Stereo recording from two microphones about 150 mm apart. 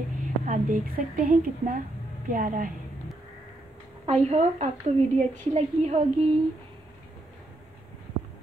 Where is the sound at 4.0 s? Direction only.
45° right (ahead or behind).